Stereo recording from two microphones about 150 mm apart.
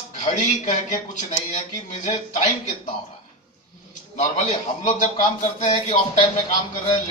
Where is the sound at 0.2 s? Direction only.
55° left (ahead or behind).